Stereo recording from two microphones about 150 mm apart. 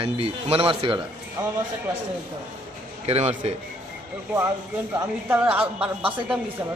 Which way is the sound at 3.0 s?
45° right (ahead or behind).